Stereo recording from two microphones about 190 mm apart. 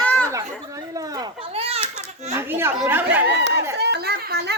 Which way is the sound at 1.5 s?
30° right (ahead or behind).